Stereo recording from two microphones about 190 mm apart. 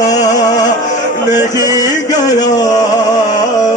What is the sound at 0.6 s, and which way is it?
Music, 40° left (ahead or behind).